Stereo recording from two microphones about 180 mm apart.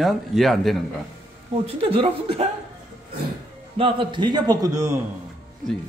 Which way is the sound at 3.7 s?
30° right (ahead or behind).